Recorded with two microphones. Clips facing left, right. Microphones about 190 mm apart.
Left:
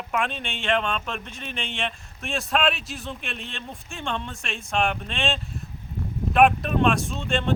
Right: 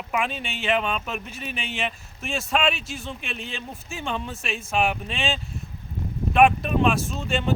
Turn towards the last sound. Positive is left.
turn(degrees=-5)  # may be behind; listen again after turning